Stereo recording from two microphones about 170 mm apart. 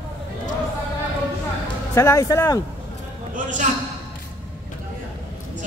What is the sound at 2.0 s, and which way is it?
Speech, 15° left (ahead or behind).